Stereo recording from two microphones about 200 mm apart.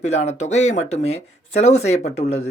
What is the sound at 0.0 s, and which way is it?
Speech, 35° left (ahead or behind).